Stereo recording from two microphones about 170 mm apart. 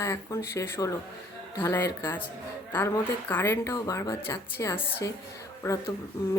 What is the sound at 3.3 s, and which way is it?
A woman's voice, 15° left (ahead or behind).